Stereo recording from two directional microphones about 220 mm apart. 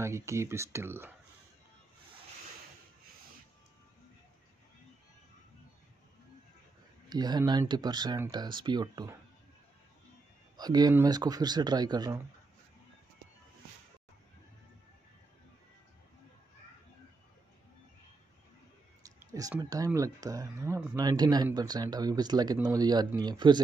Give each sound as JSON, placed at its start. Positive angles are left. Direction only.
{"t": 0.0, "sound": "speech", "side_deg": -10}
{"t": 7.1, "sound": "speech", "side_deg": -20}
{"t": 10.6, "sound": "speech", "side_deg": -15}
{"t": 19.0, "sound": "speech", "side_deg": -15}